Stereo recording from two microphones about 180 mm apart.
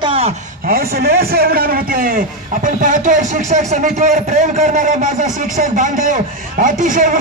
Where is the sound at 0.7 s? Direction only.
60° right (ahead or behind).